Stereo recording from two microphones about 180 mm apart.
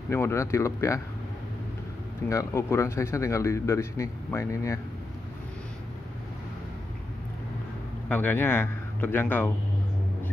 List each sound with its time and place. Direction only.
0.1 s speech: 15° left (ahead or behind)
2.2 s speech: 15° left (ahead or behind)
8.1 s a man's voice: 10° left (ahead or behind)